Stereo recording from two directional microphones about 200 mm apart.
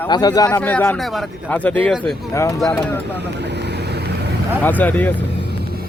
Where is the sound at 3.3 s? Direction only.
60° right (ahead or behind).